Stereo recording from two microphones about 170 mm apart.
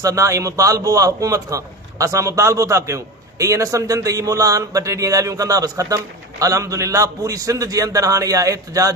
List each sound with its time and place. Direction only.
0.0 s a man's voice: 20° right (ahead or behind)